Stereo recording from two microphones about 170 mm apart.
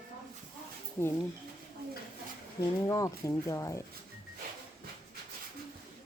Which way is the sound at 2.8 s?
20° left (ahead or behind).